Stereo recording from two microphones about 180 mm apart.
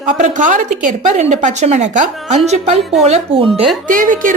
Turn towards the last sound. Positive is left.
turn(degrees=-45)  # may be behind; listen again after turning